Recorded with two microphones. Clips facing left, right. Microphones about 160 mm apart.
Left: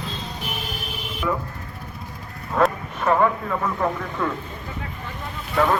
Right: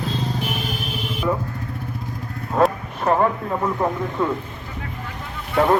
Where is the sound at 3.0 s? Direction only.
30° right (ahead or behind).